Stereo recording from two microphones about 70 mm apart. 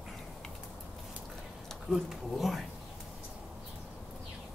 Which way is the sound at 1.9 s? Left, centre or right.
Centre.